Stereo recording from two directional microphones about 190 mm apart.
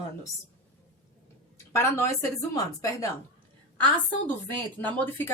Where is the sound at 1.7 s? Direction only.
15° left (ahead or behind).